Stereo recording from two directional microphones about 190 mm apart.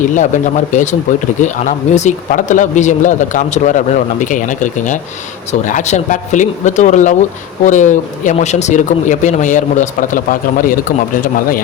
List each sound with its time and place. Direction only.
0.1 s speech: 40° left (ahead or behind)